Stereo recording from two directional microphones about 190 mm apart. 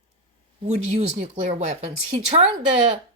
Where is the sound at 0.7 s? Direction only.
35° right (ahead or behind).